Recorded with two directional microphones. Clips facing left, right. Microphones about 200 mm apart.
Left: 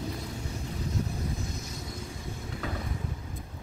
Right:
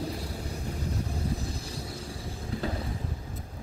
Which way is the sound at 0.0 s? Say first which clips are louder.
Right 2 dB; 35° right (ahead or behind).